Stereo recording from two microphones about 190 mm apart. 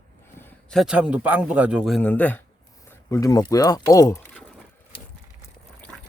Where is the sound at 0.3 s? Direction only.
10° left (ahead or behind).